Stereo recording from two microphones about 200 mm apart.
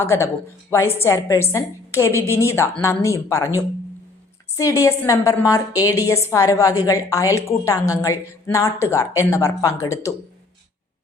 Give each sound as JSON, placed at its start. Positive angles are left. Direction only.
{"t": 0.0, "sound": "speech", "side_deg": 15}
{"t": 4.8, "sound": "speech", "side_deg": 15}